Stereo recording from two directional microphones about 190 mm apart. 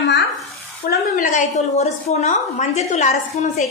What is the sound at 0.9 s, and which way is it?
A woman's voice, 45° left (ahead or behind).